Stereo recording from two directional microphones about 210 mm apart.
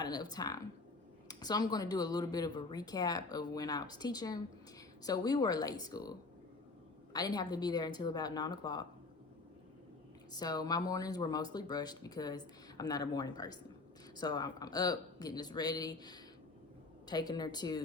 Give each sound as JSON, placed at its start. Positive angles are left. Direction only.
{"t": 0.0, "sound": "speech", "side_deg": 20}
{"t": 10.3, "sound": "speech", "side_deg": 20}